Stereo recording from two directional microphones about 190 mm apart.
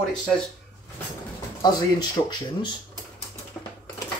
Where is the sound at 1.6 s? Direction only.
20° left (ahead or behind).